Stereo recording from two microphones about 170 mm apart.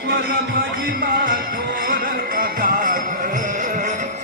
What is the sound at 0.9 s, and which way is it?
Music, 60° right (ahead or behind).